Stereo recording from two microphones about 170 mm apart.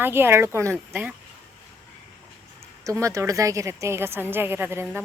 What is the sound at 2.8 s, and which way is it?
Speech, 20° right (ahead or behind).